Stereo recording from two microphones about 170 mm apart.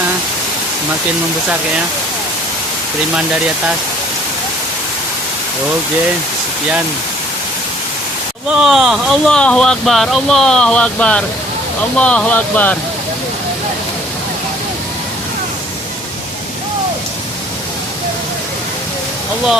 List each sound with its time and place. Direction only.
8.6 s speech: 5° right (ahead or behind)